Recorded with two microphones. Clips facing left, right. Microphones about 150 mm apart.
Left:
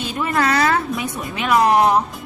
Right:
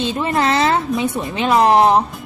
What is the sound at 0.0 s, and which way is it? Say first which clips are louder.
A woman's voice: right 2 dB; 25° right (ahead or behind).